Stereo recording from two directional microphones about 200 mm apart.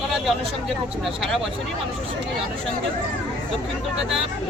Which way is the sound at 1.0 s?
Centre (ahead or behind).